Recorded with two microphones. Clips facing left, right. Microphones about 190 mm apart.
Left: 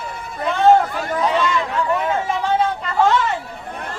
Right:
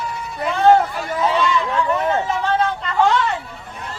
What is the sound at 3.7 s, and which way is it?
Chatter, 55° left (ahead or behind).